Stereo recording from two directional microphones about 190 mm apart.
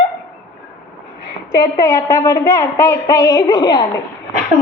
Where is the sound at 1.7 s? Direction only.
15° left (ahead or behind).